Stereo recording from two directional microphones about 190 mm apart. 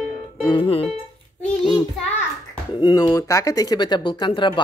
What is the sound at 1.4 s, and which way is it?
Child singing, 5° left (ahead or behind).